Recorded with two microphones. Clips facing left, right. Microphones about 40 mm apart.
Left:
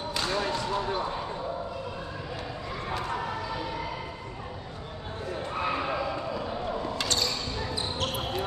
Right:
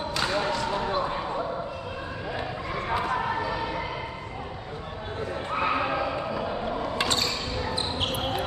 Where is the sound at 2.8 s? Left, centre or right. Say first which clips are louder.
Right 5 dB; right.